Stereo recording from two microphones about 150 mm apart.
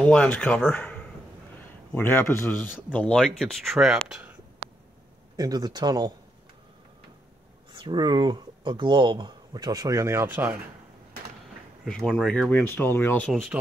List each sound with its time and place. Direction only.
0.0 s a man's voice: 10° left (ahead or behind)
5.3 s speech: 25° right (ahead or behind)
7.7 s speech: 30° right (ahead or behind); by 10.6 s 10° right (ahead or behind)
11.8 s speech: 5° left (ahead or behind)
13.3 s a man's voice: centre (ahead or behind)